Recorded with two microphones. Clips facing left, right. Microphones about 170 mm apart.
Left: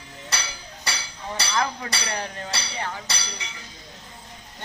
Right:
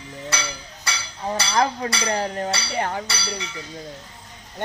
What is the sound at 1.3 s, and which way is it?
Speech, 40° right (ahead or behind).